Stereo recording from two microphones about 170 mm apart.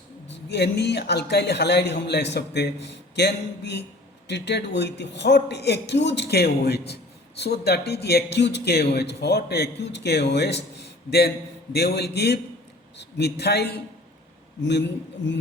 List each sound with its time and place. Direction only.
0.3 s a man's voice: 85° left
14.6 s speech: 90° left